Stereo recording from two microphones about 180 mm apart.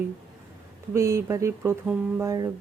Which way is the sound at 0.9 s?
15° right (ahead or behind).